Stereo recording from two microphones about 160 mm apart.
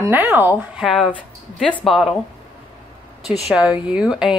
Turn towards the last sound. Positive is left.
turn(degrees=-5)  # may be behind; listen again after turning